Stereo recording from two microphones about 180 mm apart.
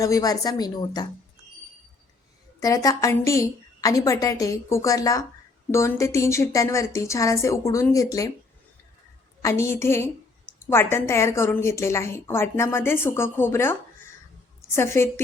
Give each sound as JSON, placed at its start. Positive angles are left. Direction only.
{"t": 0.0, "sound": "a woman's voice", "side_deg": 20}
{"t": 2.6, "sound": "a woman's voice", "side_deg": 20}
{"t": 9.4, "sound": "a woman's voice", "side_deg": 15}
{"t": 14.8, "sound": "a woman's voice", "side_deg": 15}